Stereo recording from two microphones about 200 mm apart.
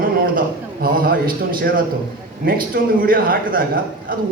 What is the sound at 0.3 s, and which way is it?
A man's voice, 45° right (ahead or behind).